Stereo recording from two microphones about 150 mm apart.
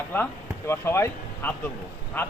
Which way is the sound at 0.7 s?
15° left (ahead or behind).